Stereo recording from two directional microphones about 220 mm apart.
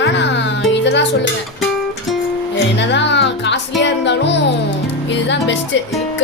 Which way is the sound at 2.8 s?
55° left (ahead or behind).